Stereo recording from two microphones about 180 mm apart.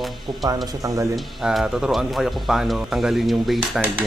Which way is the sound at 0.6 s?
20° right (ahead or behind).